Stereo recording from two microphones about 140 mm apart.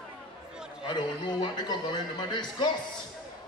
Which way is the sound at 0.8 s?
30° left (ahead or behind).